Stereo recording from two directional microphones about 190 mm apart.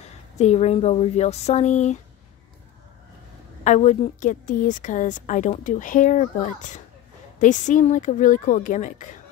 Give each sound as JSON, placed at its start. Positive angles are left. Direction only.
{"t": 0.4, "sound": "a woman's voice", "side_deg": 35}
{"t": 3.6, "sound": "a woman's voice", "side_deg": 40}